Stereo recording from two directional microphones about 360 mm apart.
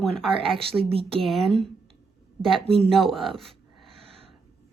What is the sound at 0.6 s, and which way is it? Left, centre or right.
Speech, centre.